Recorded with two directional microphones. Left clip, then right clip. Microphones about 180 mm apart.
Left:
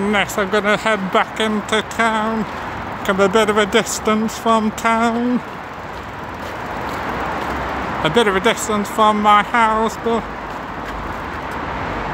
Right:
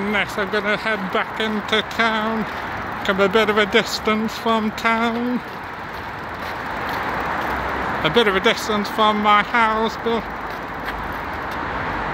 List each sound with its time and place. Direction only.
0.1 s speech: 15° left (ahead or behind)
1.7 s speech: 5° left (ahead or behind)
8.0 s speech: centre (ahead or behind)